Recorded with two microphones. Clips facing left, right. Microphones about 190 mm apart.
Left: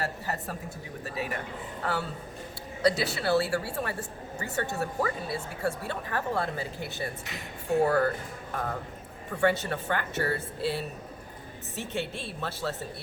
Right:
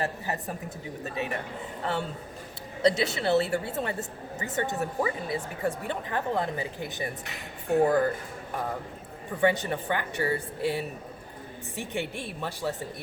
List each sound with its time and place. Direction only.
0.0 s a woman's voice: 15° right (ahead or behind)
9.4 s speech: 15° right (ahead or behind)